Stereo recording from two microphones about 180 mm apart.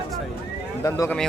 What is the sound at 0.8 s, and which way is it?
Speech, 15° left (ahead or behind).